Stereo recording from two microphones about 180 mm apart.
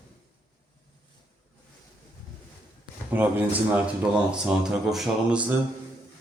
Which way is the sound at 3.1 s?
10° right (ahead or behind).